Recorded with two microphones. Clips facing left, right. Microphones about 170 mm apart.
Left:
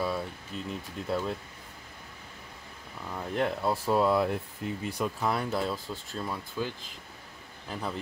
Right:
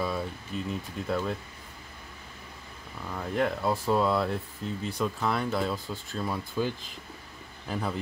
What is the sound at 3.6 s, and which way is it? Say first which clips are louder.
Speech: even; 5° left (ahead or behind).